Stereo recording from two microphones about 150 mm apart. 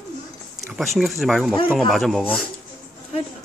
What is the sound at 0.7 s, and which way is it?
Speech, centre (ahead or behind).